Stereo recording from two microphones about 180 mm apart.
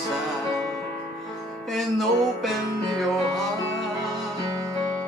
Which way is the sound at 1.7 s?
Centre (ahead or behind).